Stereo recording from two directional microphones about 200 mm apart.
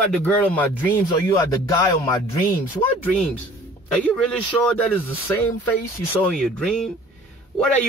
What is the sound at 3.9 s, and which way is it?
Speech, 5° left (ahead or behind).